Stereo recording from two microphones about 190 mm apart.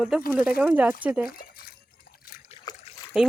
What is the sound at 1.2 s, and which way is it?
Drip, 50° left (ahead or behind).